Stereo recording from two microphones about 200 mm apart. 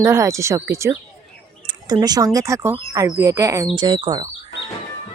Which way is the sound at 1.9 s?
20° right (ahead or behind).